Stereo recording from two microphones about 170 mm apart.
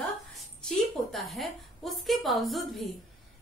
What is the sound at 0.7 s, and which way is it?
A woman's voice, centre (ahead or behind).